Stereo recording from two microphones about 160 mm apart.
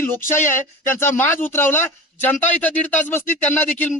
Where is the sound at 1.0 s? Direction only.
15° left (ahead or behind).